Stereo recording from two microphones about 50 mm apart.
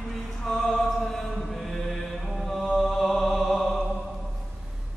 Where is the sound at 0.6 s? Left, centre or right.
Centre.